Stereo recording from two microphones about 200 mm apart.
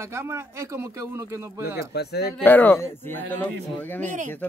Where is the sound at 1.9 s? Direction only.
55° left (ahead or behind).